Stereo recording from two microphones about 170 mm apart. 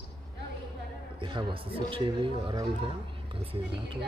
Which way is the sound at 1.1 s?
30° right (ahead or behind).